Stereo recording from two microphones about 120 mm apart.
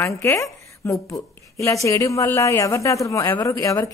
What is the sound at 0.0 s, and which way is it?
A woman's voice, 25° left (ahead or behind).